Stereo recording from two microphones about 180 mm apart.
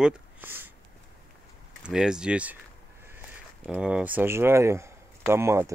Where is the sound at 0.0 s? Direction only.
10° right (ahead or behind).